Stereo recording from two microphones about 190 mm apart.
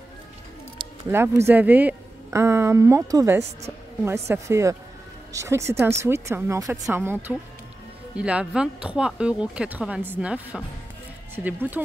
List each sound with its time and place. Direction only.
1.1 s a woman's voice: 15° right (ahead or behind)